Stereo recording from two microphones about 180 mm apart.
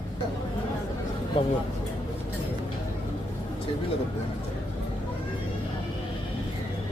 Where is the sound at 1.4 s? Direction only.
30° left (ahead or behind).